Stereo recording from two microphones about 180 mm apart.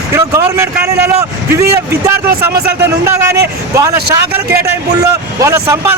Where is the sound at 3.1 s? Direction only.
15° right (ahead or behind).